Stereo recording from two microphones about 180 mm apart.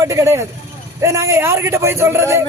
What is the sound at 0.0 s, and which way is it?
A man's voice, 15° right (ahead or behind).